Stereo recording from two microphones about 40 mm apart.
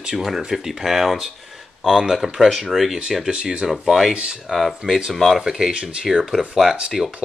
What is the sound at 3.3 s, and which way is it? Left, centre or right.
Speech, right.